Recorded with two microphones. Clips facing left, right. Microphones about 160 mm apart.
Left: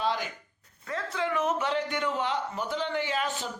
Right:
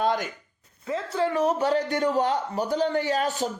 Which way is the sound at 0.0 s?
50° right (ahead or behind).